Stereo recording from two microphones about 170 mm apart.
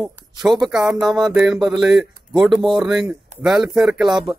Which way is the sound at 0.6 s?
5° right (ahead or behind).